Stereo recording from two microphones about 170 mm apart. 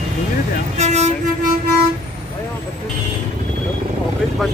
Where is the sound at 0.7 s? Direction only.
40° right (ahead or behind).